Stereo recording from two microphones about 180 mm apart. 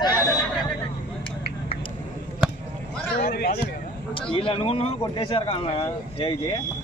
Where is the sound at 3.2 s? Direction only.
60° left (ahead or behind).